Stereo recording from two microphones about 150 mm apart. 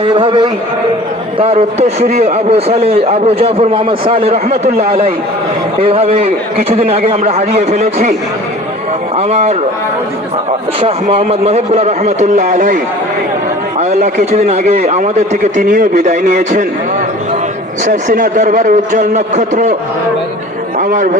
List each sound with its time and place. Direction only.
0.0 s a man's voice: 35° right (ahead or behind)
9.1 s a man's voice: 45° right (ahead or behind)
10.8 s a man's voice: 40° right (ahead or behind); by 12.8 s 65° right (ahead or behind)
13.7 s a man's voice: 50° right (ahead or behind)
17.8 s a man's voice: 60° right (ahead or behind)
20.7 s a man's voice: 60° right (ahead or behind)